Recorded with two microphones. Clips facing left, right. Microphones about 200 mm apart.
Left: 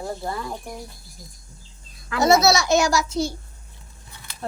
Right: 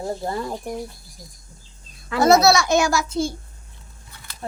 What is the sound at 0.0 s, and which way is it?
Speech, 30° right (ahead or behind).